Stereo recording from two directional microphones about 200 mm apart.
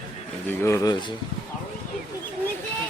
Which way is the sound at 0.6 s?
15° left (ahead or behind).